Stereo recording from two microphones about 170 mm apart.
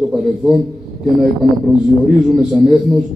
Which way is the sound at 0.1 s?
Centre (ahead or behind).